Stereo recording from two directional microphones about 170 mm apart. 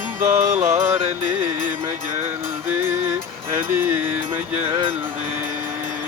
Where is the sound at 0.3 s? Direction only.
15° right (ahead or behind).